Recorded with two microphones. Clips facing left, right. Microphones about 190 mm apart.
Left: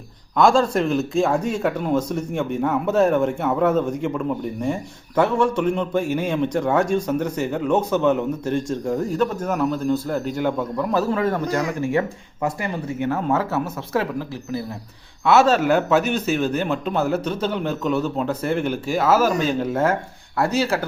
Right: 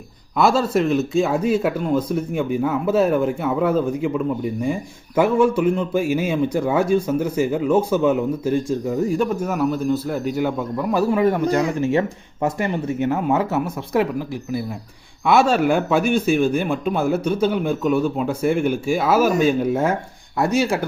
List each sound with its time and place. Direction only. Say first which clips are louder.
0.3 s a man's voice: left 1 dB; 5° right (ahead or behind)